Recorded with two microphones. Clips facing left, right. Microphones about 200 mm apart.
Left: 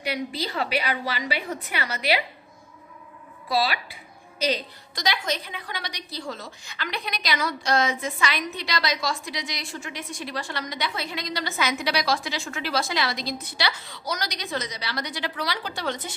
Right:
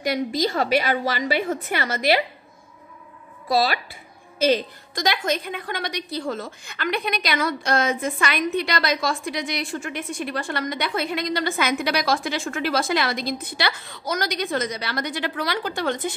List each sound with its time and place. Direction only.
0.0 s a woman's voice: 45° right (ahead or behind)
3.4 s a woman's voice: 45° right (ahead or behind)